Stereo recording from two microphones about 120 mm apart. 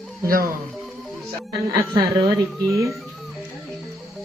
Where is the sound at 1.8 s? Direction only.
30° right (ahead or behind).